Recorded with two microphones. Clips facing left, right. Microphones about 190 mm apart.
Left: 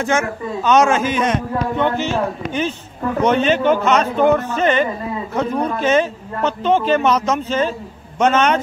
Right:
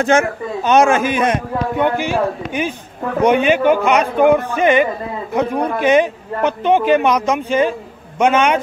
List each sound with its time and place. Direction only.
0.0 s a man's voice: 65° right (ahead or behind)
1.0 s a man's voice: 10° right (ahead or behind)